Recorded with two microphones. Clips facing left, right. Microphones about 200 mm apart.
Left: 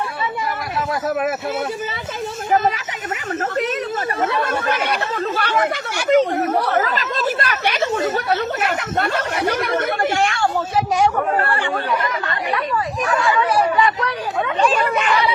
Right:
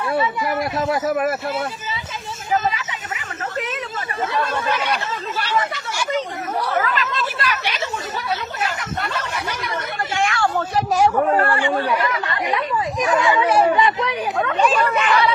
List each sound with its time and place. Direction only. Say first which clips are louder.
4.2 s speech: even; 55° left (ahead or behind)
6.7 s speech: left 2 dB; 35° left (ahead or behind); by 10.1 s 55° left (ahead or behind)
10.2 s speech: left 1 dB; 30° left (ahead or behind)
13.1 s speech: right 1 dB; 20° right (ahead or behind)
14.7 s speech: even; 10° left (ahead or behind)